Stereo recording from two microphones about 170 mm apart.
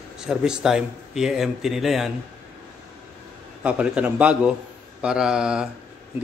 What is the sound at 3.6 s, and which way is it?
A man's voice, 5° right (ahead or behind).